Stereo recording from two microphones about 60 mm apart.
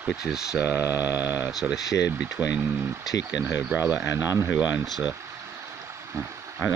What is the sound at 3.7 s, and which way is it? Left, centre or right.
Speech, right.